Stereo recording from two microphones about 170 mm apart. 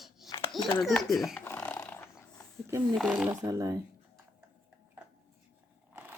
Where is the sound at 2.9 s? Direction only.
5° right (ahead or behind).